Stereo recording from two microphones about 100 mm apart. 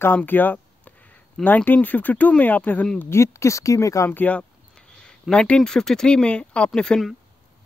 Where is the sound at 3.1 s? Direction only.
30° left (ahead or behind).